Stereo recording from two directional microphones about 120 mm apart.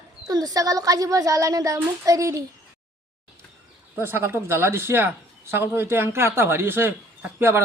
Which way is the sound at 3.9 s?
20° right (ahead or behind).